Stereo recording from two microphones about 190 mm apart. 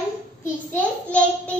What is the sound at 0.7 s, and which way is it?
Speech, 5° left (ahead or behind).